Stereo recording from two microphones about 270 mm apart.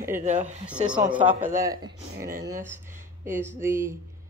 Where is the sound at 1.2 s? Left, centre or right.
Centre.